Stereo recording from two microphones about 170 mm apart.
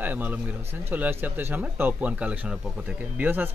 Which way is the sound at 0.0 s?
10° right (ahead or behind).